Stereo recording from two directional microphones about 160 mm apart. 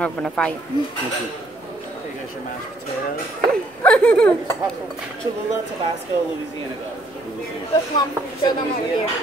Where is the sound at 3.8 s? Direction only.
5° left (ahead or behind).